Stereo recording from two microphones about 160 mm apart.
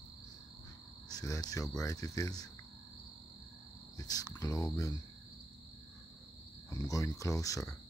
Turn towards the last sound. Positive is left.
turn(degrees=20)  # may be behind; listen again after turning